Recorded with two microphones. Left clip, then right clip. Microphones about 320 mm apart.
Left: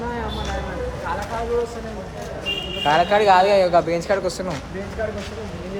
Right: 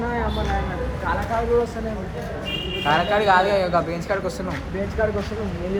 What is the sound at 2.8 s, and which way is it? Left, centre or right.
Speech, left.